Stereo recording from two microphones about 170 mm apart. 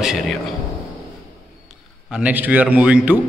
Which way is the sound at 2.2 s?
10° right (ahead or behind).